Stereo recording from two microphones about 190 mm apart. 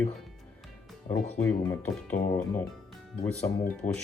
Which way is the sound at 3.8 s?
40° left (ahead or behind).